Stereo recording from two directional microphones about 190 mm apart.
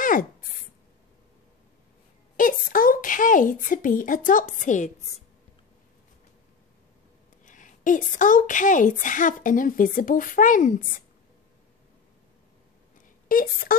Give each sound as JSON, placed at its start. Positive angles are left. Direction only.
{"t": 0.0, "sound": "a sound", "side_deg": 45}
{"t": 2.3, "sound": "a woman's voice", "side_deg": 45}
{"t": 7.4, "sound": "a woman's voice", "side_deg": 45}
{"t": 13.3, "sound": "a woman's voice", "side_deg": 50}